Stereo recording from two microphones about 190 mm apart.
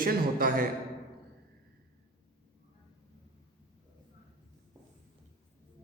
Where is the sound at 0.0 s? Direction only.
50° right (ahead or behind).